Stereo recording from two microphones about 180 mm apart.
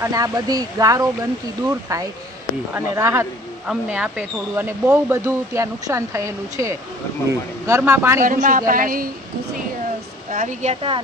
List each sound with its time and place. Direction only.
0.0 s speech: 20° right (ahead or behind)
8.2 s a woman's voice: 45° right (ahead or behind)
10.3 s speech: 45° right (ahead or behind)